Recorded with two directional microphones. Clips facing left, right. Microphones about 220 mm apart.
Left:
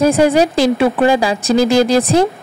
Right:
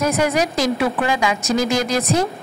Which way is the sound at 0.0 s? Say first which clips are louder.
Left 7 dB; 30° left (ahead or behind).